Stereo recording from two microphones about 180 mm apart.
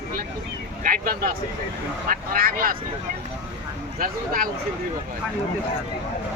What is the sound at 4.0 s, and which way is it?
Speech, 50° right (ahead or behind).